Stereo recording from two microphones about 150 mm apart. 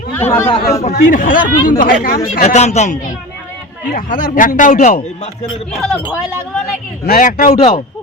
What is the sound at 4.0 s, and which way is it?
Speech, 60° left (ahead or behind).